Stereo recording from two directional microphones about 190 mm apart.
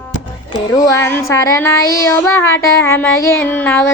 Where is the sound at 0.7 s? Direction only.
20° left (ahead or behind).